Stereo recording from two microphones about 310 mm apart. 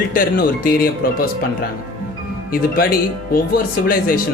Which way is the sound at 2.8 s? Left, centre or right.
Left.